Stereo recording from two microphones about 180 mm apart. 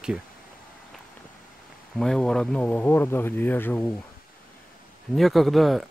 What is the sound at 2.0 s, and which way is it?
Speech, centre (ahead or behind).